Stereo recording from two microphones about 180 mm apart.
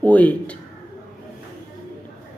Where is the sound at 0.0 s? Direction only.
10° left (ahead or behind).